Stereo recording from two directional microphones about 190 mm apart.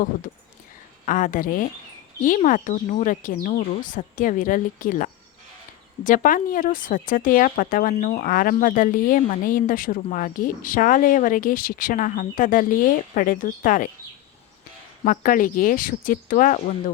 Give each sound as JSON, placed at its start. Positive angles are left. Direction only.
{"t": 1.0, "sound": "speech", "side_deg": 45}
{"t": 15.0, "sound": "speech", "side_deg": 45}